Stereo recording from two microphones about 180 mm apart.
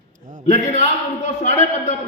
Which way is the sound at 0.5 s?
40° left (ahead or behind).